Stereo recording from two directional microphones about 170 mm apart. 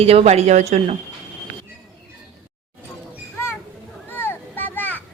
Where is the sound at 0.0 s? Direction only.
35° right (ahead or behind).